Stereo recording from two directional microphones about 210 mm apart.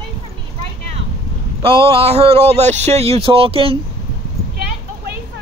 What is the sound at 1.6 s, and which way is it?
Speech, 25° right (ahead or behind).